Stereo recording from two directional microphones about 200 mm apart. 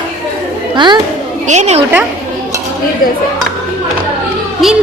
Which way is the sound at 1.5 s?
35° right (ahead or behind).